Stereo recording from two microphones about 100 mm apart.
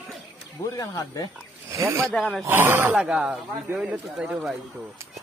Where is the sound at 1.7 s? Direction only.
30° right (ahead or behind).